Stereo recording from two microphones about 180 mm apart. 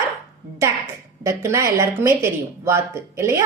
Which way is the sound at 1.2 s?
15° right (ahead or behind).